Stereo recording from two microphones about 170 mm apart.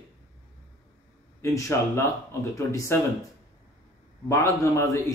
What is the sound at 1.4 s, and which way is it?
Speech, 20° left (ahead or behind).